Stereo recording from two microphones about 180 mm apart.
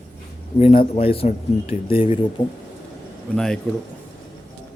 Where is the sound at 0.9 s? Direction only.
30° left (ahead or behind).